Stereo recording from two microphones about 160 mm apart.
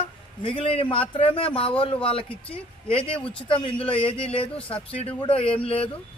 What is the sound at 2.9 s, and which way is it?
Speech, 35° left (ahead or behind).